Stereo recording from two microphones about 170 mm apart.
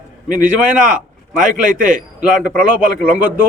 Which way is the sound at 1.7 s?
50° right (ahead or behind).